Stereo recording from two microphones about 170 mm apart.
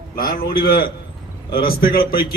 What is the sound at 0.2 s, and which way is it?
A man's voice, 60° left (ahead or behind).